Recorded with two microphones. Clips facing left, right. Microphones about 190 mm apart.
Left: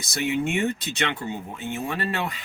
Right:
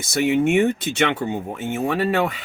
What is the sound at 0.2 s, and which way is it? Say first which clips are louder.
Speech: right 7 dB; 60° right (ahead or behind).